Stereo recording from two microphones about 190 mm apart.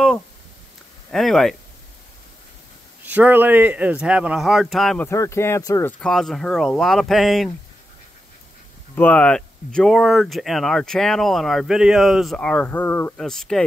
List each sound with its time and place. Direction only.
1.1 s speech: centre (ahead or behind)
3.0 s speech: 10° right (ahead or behind)
5.0 s speech: 15° left (ahead or behind)
8.9 s speech: 5° left (ahead or behind)